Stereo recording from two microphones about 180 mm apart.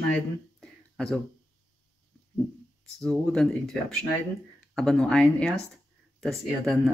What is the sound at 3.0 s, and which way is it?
Speech, 5° left (ahead or behind).